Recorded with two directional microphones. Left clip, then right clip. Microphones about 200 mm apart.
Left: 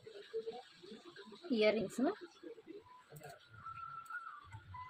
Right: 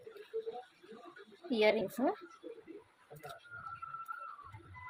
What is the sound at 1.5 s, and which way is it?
Speech, 15° left (ahead or behind).